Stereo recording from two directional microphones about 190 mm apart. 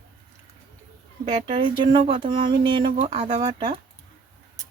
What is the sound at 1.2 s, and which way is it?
Speech, 30° right (ahead or behind).